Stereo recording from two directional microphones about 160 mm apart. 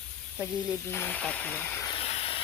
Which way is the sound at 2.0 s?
40° left (ahead or behind).